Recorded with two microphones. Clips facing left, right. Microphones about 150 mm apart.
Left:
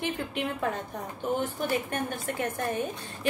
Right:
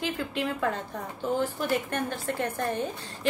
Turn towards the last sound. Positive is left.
turn(degrees=15)  # may be behind; listen again after turning